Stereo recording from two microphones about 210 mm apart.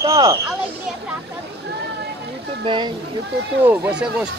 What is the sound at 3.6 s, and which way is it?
Speech, 10° right (ahead or behind).